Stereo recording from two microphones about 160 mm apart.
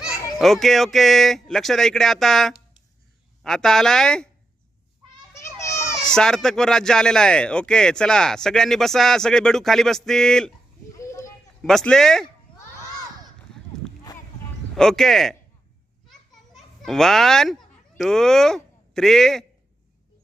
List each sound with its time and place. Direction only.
0.0 s speech: centre (ahead or behind)
5.5 s children playing: 20° left (ahead or behind)
6.1 s speech: 5° left (ahead or behind)
10.9 s a sound: 20° left (ahead or behind)
11.6 s speech: 5° left (ahead or behind)
12.5 s crowd: 30° left (ahead or behind)
14.8 s speech: centre (ahead or behind)
16.0 s children playing: centre (ahead or behind)